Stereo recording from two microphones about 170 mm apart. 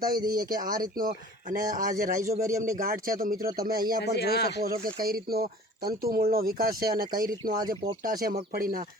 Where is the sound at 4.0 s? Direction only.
75° left (ahead or behind).